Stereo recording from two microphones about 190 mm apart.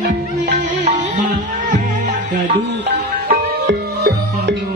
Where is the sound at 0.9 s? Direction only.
40° right (ahead or behind).